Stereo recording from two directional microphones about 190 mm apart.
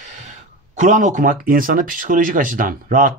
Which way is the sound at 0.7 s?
40° right (ahead or behind).